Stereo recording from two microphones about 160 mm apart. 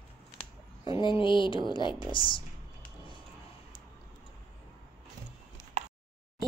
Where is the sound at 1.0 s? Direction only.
30° left (ahead or behind).